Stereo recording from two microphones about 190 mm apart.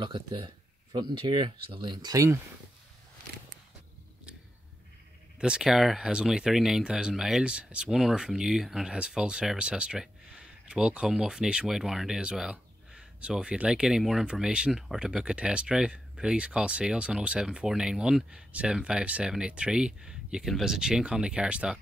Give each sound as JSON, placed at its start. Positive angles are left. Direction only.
{"t": 0.0, "sound": "speech", "side_deg": -25}
{"t": 5.4, "sound": "speech", "side_deg": -5}